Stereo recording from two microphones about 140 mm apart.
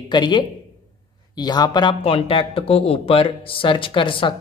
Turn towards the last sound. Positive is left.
turn(degrees=35)  # may be behind; listen again after turning